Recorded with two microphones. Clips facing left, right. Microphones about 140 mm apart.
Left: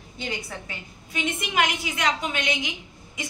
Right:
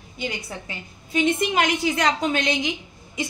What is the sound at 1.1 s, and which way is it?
A woman's voice, 30° right (ahead or behind).